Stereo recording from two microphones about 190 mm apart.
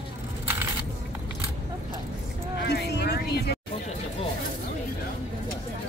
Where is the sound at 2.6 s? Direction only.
60° left (ahead or behind).